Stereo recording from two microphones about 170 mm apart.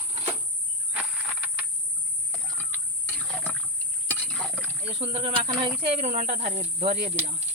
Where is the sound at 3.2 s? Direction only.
5° left (ahead or behind).